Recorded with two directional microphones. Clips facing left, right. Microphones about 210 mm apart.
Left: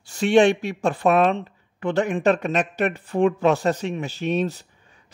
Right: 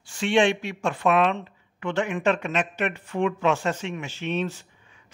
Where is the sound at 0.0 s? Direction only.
40° left (ahead or behind).